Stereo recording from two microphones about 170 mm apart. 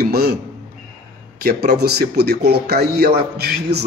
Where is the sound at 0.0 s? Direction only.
70° right (ahead or behind).